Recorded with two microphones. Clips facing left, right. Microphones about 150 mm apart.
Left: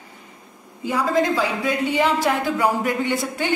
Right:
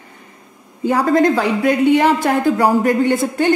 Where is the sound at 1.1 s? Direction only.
55° right (ahead or behind).